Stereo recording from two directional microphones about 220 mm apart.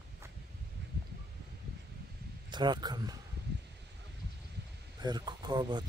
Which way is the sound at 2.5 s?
20° right (ahead or behind).